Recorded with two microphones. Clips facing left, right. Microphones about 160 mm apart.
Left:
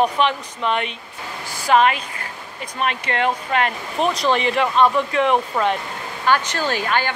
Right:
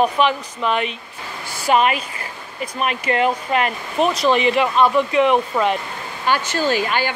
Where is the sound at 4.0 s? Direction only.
5° right (ahead or behind).